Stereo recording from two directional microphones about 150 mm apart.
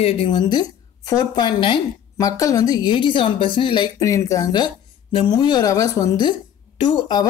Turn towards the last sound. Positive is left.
turn(degrees=30)  # may be behind; listen again after turning